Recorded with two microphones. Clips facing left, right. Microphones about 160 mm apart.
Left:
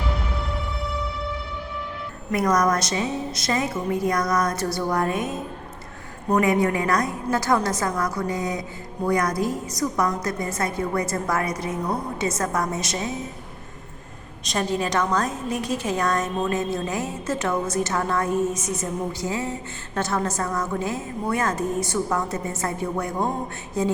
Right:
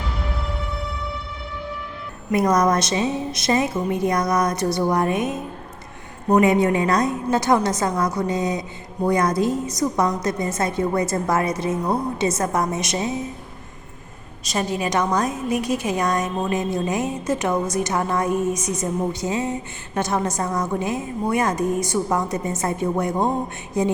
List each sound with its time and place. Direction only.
2.3 s a woman's voice: 25° right (ahead or behind)
14.4 s a woman's voice: 5° right (ahead or behind)